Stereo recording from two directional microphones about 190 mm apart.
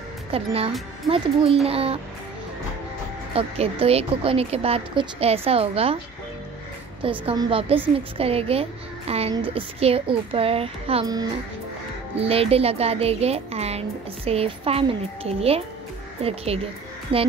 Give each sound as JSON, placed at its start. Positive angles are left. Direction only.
{"t": 0.3, "sound": "speech", "side_deg": -30}
{"t": 3.3, "sound": "speech", "side_deg": -30}
{"t": 7.0, "sound": "a child's voice", "side_deg": -25}
{"t": 12.2, "sound": "a child's voice", "side_deg": -30}